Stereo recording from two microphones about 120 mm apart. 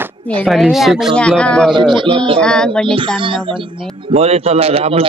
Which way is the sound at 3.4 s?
45° right (ahead or behind).